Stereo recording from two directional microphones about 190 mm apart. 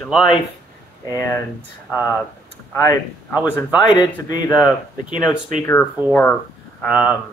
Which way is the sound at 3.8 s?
25° left (ahead or behind).